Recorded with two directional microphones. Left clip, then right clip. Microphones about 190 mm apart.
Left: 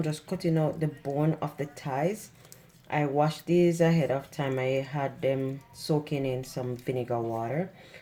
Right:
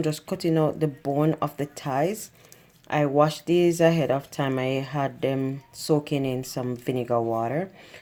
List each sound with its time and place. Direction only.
0.0 s speech: 45° right (ahead or behind)